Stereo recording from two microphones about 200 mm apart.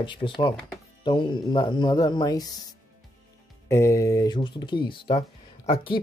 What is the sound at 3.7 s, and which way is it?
Speech, 15° left (ahead or behind).